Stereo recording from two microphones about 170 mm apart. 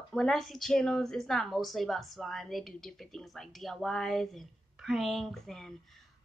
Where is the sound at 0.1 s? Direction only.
Centre (ahead or behind).